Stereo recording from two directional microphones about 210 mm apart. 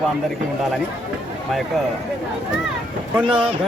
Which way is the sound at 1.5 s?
Centre (ahead or behind).